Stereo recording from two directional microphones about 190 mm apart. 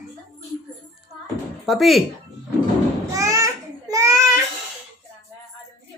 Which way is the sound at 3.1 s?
15° right (ahead or behind).